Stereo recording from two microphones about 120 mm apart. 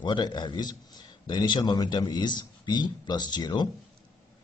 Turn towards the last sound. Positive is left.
turn(degrees=35)  # may be behind; listen again after turning